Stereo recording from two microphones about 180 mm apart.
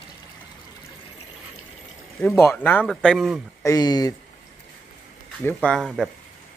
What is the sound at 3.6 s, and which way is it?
Speech, 20° left (ahead or behind).